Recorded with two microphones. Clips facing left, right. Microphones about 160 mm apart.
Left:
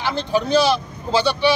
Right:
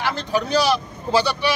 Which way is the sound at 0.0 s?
25° left (ahead or behind).